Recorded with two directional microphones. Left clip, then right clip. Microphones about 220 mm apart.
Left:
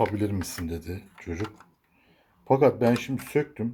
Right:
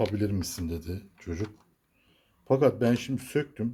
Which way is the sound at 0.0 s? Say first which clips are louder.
Left 3 dB; 10° right (ahead or behind).